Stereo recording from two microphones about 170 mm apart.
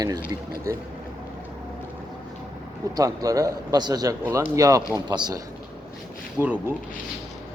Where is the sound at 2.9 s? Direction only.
20° right (ahead or behind).